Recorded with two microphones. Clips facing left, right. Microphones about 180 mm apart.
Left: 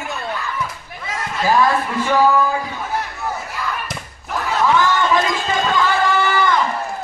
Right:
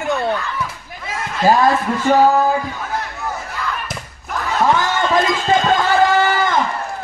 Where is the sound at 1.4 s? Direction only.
45° right (ahead or behind).